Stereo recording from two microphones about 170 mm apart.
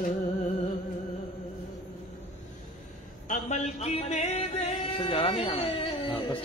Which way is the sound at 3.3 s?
40° left (ahead or behind).